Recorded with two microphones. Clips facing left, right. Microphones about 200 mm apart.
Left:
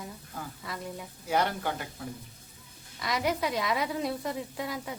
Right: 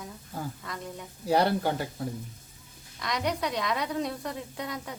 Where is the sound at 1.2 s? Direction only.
35° right (ahead or behind).